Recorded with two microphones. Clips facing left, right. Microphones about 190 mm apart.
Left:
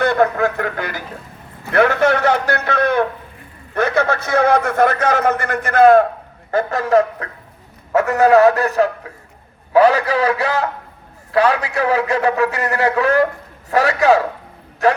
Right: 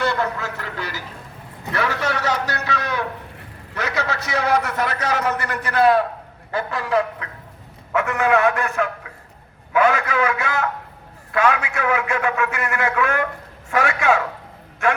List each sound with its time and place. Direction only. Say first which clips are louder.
0.0 s a man's voice: left 8 dB; 55° left (ahead or behind); by 15.0 s 35° left (ahead or behind)